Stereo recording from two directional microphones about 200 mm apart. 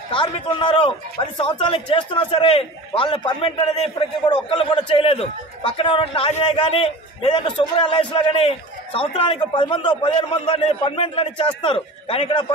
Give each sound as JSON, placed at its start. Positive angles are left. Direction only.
{"t": 0.1, "sound": "a man's voice", "side_deg": 25}